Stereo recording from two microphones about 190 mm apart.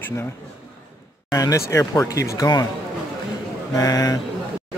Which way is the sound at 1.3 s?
15° left (ahead or behind).